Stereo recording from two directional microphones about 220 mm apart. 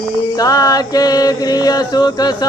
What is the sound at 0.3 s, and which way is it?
Mantra, 15° left (ahead or behind).